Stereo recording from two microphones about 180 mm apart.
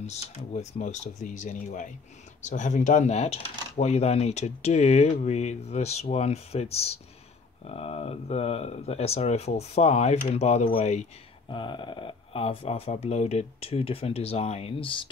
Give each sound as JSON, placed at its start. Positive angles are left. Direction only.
{"t": 0.0, "sound": "speech", "side_deg": 40}